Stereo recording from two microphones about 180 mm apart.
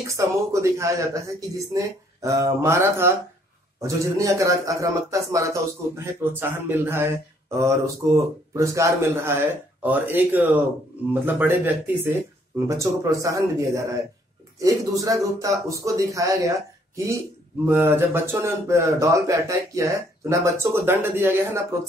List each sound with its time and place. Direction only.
0.0 s speech: 15° right (ahead or behind)